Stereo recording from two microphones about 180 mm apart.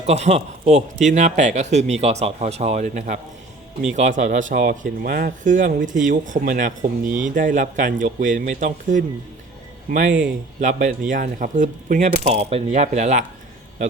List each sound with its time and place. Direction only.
0.0 s speech: 35° right (ahead or behind)